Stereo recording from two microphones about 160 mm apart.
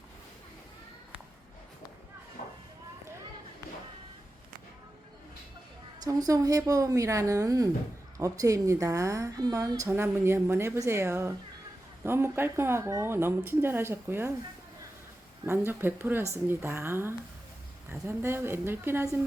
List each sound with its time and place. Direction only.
2.4 s a sound: 55° left (ahead or behind)
6.0 s a woman's voice: 20° right (ahead or behind)
15.4 s speech: 15° right (ahead or behind)